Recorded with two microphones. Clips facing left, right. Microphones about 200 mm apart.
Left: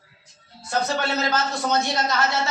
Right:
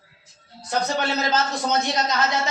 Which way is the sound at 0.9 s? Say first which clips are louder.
Right 1 dB; 20° right (ahead or behind).